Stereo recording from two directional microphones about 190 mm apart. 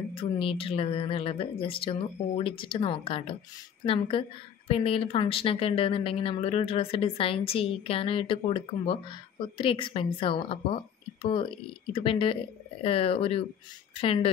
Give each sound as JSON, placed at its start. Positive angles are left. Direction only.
{"t": 0.1, "sound": "a woman's voice", "side_deg": 30}